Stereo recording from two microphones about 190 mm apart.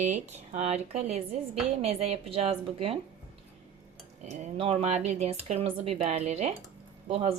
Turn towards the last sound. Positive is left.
turn(degrees=-30)  # may be behind; listen again after turning